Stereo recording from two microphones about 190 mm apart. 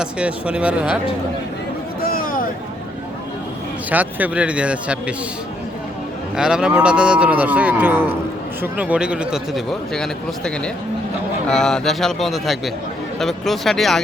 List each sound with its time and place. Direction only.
0.0 s speech: 5° right (ahead or behind)
2.0 s a sound: 50° left (ahead or behind)
3.8 s speech: 10° right (ahead or behind)
6.3 s speech: 5° right (ahead or behind)